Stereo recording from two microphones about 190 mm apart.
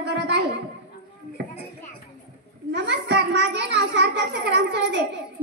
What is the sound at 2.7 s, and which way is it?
A child's voice, 65° right (ahead or behind).